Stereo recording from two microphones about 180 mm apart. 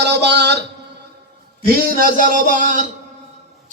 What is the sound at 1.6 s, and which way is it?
Speech, 50° right (ahead or behind).